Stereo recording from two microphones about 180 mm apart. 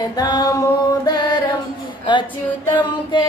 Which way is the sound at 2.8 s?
25° left (ahead or behind).